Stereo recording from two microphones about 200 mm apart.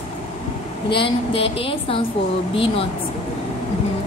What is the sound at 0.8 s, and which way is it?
A woman's voice, 25° left (ahead or behind).